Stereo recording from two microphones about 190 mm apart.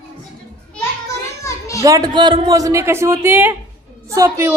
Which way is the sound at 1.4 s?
15° left (ahead or behind).